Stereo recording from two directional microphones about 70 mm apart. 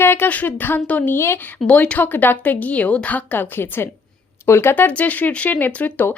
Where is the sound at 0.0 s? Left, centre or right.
Left.